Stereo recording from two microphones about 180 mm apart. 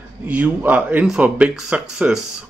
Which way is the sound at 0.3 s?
10° right (ahead or behind).